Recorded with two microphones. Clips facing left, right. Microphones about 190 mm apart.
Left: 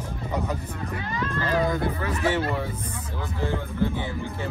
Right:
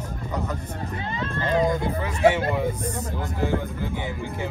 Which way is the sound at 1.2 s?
25° right (ahead or behind).